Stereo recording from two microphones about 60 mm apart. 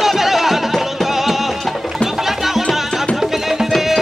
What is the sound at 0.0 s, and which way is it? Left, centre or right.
Music, centre.